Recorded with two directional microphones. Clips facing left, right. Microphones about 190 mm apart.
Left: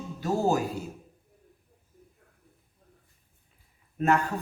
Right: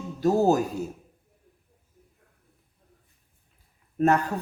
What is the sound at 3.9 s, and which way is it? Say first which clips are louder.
Speech: right 3 dB; 40° right (ahead or behind).